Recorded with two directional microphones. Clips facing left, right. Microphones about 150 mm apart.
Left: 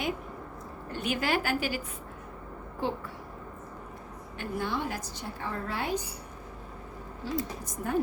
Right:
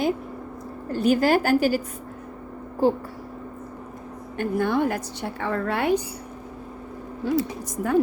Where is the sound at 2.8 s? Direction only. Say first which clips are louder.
Right 11 dB; 35° right (ahead or behind).